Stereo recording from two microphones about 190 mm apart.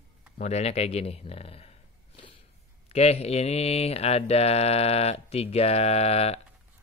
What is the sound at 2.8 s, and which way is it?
Mantra, 35° left (ahead or behind).